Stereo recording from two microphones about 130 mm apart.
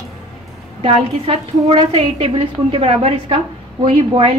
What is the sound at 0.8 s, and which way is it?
A woman's voice, 50° right (ahead or behind).